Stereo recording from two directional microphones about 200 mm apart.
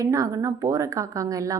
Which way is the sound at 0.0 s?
15° right (ahead or behind).